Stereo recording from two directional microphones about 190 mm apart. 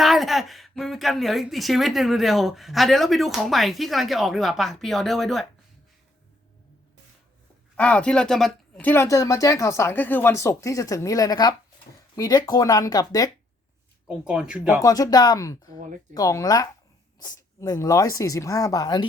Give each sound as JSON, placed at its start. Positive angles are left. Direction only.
{"t": 0.0, "sound": "a woman's voice", "side_deg": 0}
{"t": 7.8, "sound": "speech", "side_deg": 5}
{"t": 14.3, "sound": "a woman's voice", "side_deg": -5}
{"t": 14.8, "sound": "speech", "side_deg": 20}
{"t": 15.7, "sound": "speech", "side_deg": -45}
{"t": 16.1, "sound": "speech", "side_deg": 20}